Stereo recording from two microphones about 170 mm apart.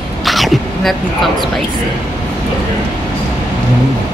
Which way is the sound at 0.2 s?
Centre (ahead or behind).